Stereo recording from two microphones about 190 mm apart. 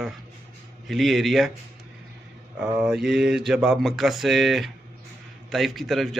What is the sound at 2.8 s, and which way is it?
Speech, 5° right (ahead or behind).